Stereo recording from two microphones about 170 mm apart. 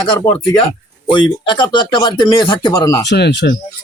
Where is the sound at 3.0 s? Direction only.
80° left.